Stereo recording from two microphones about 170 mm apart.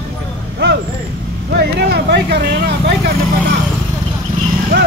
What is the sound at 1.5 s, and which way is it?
Vehicle, 70° right (ahead or behind).